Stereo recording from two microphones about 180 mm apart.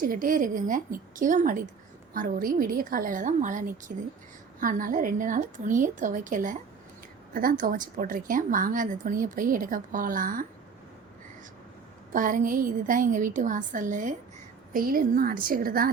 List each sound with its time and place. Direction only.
0.0 s a woman's voice: 50° right (ahead or behind)
12.1 s a woman's voice: 45° right (ahead or behind)